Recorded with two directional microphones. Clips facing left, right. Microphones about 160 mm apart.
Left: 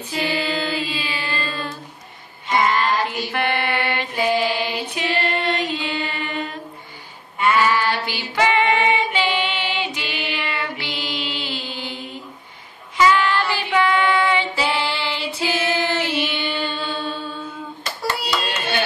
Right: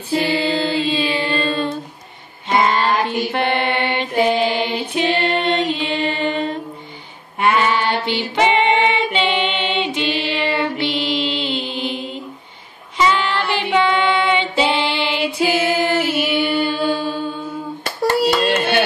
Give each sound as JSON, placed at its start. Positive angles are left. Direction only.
{"t": 0.1, "sound": "mantra", "side_deg": -30}
{"t": 2.6, "sound": "female singing", "side_deg": -25}
{"t": 3.1, "sound": "mantra", "side_deg": -25}
{"t": 7.5, "sound": "female singing", "side_deg": -25}
{"t": 9.9, "sound": "child singing", "side_deg": -25}
{"t": 16.1, "sound": "mantra", "side_deg": -5}
{"t": 17.8, "sound": "hands", "side_deg": -50}